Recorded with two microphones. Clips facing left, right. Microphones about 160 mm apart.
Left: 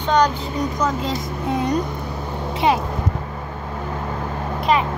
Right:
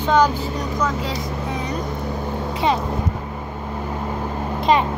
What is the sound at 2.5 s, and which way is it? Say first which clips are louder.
Vehicle: left 2 dB; 20° left (ahead or behind).